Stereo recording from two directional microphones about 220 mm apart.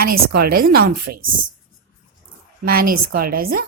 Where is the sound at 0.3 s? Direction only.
45° right (ahead or behind).